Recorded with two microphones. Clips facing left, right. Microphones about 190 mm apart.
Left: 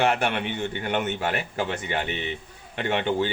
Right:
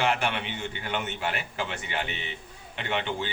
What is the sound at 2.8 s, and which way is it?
Speech, 45° left (ahead or behind).